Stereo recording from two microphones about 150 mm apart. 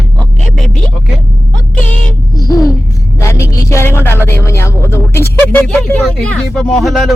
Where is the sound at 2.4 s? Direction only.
25° left (ahead or behind).